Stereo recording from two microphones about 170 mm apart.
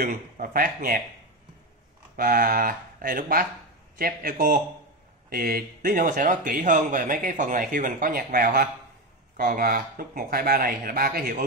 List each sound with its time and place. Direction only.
0.0 s speech: 55° right (ahead or behind)
2.1 s speech: 60° right (ahead or behind)